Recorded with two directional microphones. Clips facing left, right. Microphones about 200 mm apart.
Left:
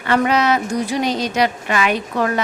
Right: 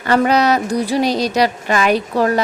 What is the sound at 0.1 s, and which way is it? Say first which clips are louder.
Speech: right 2 dB; 40° right (ahead or behind).